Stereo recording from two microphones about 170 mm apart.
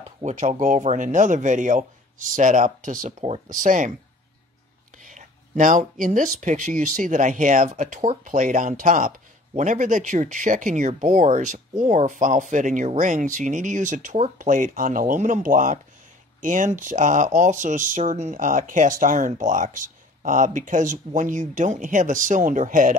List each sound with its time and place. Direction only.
0.2 s speech: 45° right (ahead or behind)
5.0 s speech: 50° right (ahead or behind)